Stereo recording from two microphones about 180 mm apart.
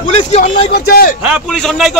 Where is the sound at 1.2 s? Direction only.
5° right (ahead or behind).